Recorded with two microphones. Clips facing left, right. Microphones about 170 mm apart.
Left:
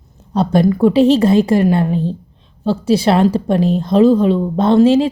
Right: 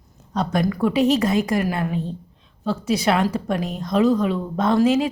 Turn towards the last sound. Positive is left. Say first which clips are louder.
# left 7 dB
turn(degrees=30)  # may be behind; listen again after turning